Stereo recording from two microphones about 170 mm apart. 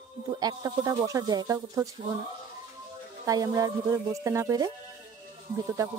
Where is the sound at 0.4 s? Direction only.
20° right (ahead or behind).